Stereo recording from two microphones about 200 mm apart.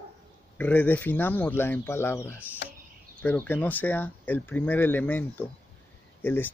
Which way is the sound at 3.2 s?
10° left (ahead or behind).